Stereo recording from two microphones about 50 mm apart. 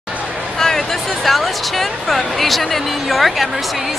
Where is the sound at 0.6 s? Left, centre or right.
Centre.